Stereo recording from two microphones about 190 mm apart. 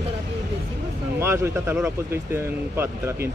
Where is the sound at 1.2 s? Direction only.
15° right (ahead or behind).